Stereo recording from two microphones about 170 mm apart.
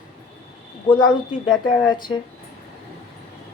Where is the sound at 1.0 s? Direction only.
25° left (ahead or behind).